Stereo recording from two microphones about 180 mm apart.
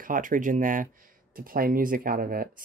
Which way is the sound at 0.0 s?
50° right (ahead or behind).